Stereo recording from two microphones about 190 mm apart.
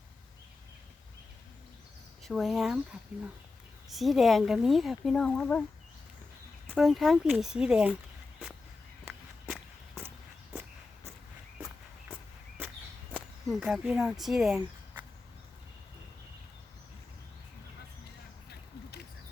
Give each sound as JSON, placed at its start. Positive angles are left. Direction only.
{"t": 2.2, "sound": "speech", "side_deg": 0}
{"t": 6.7, "sound": "speech", "side_deg": 0}
{"t": 12.6, "sound": "walk", "side_deg": -10}
{"t": 13.1, "sound": "speech", "side_deg": -5}
{"t": 18.4, "sound": "a sound", "side_deg": 60}